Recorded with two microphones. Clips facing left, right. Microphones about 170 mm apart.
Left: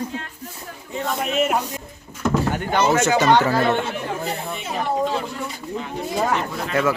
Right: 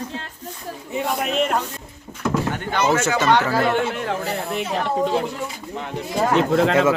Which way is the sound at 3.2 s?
20° left (ahead or behind).